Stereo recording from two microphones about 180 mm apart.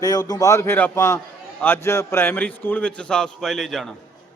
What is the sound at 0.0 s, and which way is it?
A man's voice, 20° left (ahead or behind).